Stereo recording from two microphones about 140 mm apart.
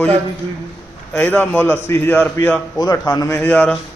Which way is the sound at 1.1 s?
15° left (ahead or behind).